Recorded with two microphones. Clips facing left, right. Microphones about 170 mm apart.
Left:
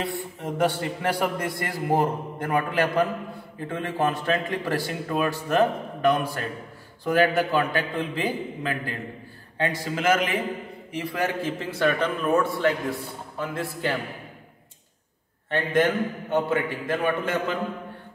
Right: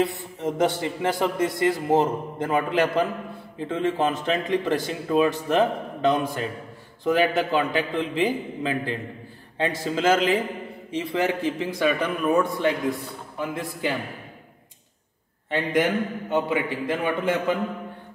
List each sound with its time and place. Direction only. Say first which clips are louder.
0.0 s a man's voice: right 5 dB; 20° right (ahead or behind)
15.5 s a man's voice: even; 10° right (ahead or behind)